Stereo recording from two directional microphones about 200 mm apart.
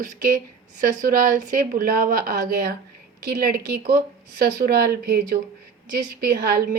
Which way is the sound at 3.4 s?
45° right (ahead or behind).